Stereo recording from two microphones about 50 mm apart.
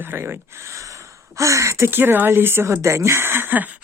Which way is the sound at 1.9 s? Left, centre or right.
Right.